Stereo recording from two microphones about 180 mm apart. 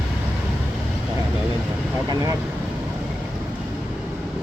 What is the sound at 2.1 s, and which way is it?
Speech, 20° right (ahead or behind).